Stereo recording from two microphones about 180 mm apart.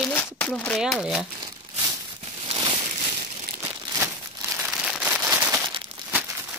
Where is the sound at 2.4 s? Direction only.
30° right (ahead or behind).